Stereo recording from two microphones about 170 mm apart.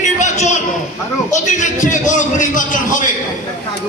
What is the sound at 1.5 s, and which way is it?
A man's voice, 45° left (ahead or behind).